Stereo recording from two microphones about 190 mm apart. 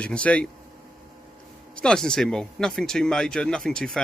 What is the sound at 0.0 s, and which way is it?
Speech, 5° left (ahead or behind).